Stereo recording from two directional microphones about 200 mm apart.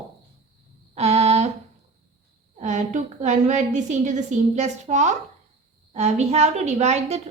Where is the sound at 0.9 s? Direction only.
35° right (ahead or behind).